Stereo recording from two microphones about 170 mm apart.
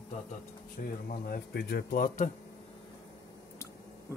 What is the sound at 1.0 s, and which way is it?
Speech, 60° left (ahead or behind).